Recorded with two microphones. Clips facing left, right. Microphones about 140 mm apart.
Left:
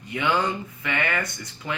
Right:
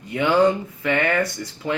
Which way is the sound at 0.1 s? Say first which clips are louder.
Right 7 dB; 40° right (ahead or behind).